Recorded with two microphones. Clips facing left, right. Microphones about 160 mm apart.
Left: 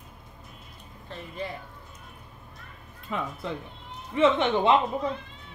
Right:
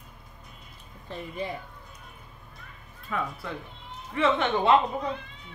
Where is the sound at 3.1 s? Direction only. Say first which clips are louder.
Left 1 dB; 20° left (ahead or behind).